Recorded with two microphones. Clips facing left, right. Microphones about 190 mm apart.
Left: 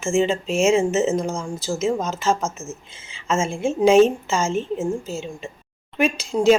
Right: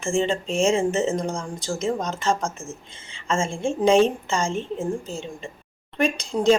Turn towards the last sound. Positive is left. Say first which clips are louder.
# left 3 dB
turn(degrees=5)  # may be behind; listen again after turning